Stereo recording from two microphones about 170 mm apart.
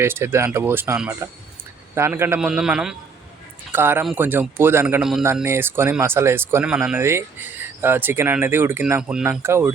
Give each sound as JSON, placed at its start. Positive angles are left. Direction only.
{"t": 0.0, "sound": "speech", "side_deg": -15}